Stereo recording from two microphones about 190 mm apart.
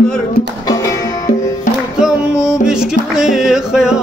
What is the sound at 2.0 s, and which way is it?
Music, 5° right (ahead or behind).